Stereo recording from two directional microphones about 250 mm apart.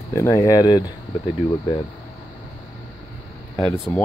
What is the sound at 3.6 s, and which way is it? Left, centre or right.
Speech, centre.